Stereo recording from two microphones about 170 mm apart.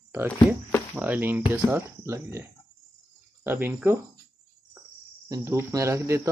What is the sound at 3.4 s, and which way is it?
Speech, 10° right (ahead or behind).